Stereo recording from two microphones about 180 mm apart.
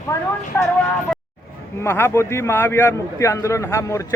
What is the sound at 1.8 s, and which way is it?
A man's voice, 15° left (ahead or behind).